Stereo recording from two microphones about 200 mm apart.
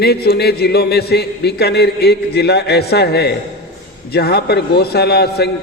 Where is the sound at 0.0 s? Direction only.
55° left (ahead or behind).